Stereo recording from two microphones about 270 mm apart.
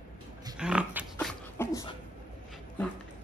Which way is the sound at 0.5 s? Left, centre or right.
Centre.